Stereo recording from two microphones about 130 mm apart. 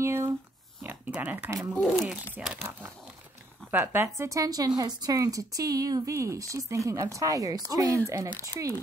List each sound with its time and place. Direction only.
0.0 s a sound: 20° right (ahead or behind)
0.8 s speech: 10° right (ahead or behind)
1.8 s speech: centre (ahead or behind)
2.3 s a woman's voice: 10° right (ahead or behind); by 8.0 s 30° right (ahead or behind)